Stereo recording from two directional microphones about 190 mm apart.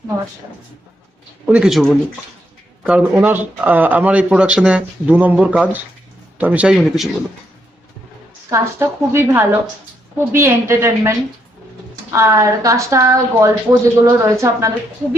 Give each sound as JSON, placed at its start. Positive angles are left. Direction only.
{"t": 1.5, "sound": "speech", "side_deg": -5}
{"t": 8.4, "sound": "speech", "side_deg": -15}
{"t": 12.1, "sound": "speech", "side_deg": -15}